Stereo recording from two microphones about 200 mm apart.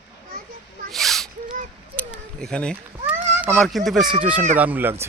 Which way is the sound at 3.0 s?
10° right (ahead or behind).